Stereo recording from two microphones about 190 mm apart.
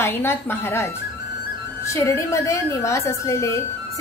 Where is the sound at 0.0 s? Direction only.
10° left (ahead or behind).